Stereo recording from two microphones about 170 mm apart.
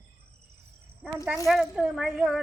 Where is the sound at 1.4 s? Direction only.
Centre (ahead or behind).